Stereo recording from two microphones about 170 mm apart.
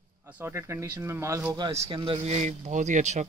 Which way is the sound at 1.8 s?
30° right (ahead or behind).